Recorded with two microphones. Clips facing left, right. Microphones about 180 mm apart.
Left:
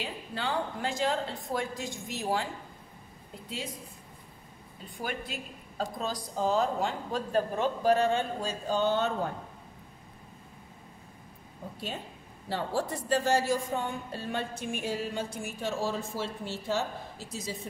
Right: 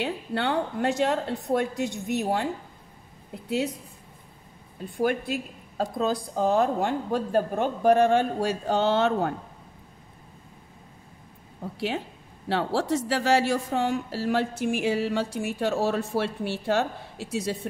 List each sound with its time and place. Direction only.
0.0 s a woman's voice: 70° right (ahead or behind)
4.9 s a woman's voice: 65° right (ahead or behind)
11.7 s a woman's voice: 80° right